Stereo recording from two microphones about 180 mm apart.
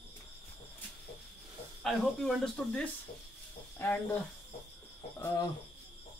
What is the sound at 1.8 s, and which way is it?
Speech, centre (ahead or behind).